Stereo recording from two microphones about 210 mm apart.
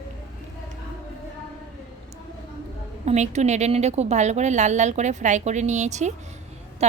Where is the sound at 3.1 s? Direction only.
35° right (ahead or behind).